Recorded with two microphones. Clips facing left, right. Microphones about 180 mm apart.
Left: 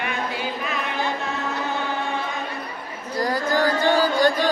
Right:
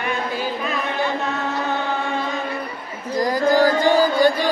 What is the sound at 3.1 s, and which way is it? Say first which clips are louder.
Female singing: right 5 dB; 10° right (ahead or behind).